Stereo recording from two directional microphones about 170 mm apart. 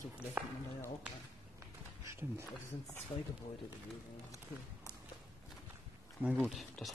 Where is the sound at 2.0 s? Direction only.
15° right (ahead or behind).